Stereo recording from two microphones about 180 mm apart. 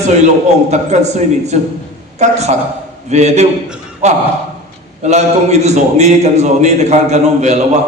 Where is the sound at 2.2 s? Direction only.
40° right (ahead or behind).